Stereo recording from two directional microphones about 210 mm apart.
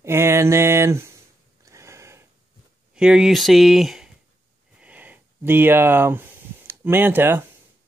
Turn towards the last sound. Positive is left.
turn(degrees=-10)  # may be behind; listen again after turning